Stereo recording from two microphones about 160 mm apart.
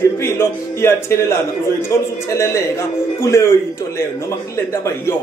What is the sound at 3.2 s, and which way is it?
Speech, 20° left (ahead or behind).